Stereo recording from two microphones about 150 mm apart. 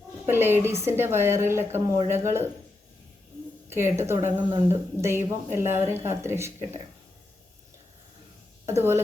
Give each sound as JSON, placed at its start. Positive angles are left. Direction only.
{"t": 0.3, "sound": "speech", "side_deg": -15}
{"t": 3.7, "sound": "speech", "side_deg": -15}
{"t": 8.6, "sound": "a woman's voice", "side_deg": -15}